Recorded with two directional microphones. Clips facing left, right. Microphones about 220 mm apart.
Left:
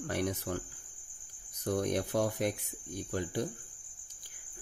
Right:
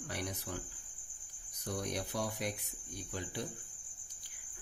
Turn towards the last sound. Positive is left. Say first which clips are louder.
# left 7 dB
turn(degrees=45)  # may be behind; listen again after turning